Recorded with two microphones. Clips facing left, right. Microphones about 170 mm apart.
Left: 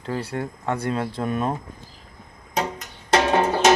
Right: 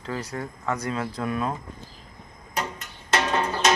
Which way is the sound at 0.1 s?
30° left (ahead or behind).